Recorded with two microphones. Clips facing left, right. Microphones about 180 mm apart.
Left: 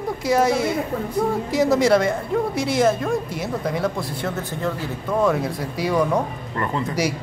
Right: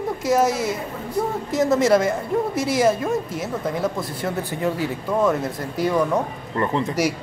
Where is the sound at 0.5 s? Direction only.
60° left (ahead or behind).